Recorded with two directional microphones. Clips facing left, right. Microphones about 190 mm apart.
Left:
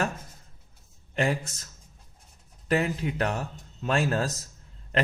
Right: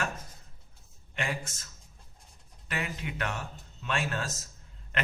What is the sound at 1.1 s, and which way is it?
Speech, 40° left (ahead or behind).